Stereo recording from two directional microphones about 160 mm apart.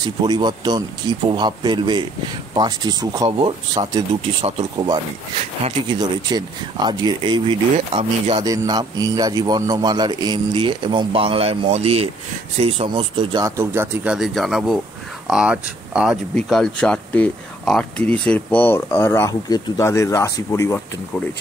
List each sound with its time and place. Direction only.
0.0 s speech: 25° right (ahead or behind)
5.4 s speech: 40° right (ahead or behind)
5.9 s speech: 25° right (ahead or behind)
8.4 s speech: 25° right (ahead or behind)
13.6 s speech: 15° right (ahead or behind)
14.1 s speech: centre (ahead or behind); by 20.8 s 20° left (ahead or behind)